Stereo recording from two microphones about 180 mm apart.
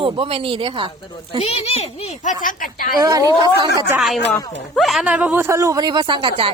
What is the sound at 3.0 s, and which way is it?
Speech, 20° right (ahead or behind).